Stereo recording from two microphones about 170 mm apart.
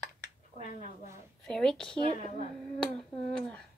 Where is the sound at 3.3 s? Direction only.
5° left (ahead or behind).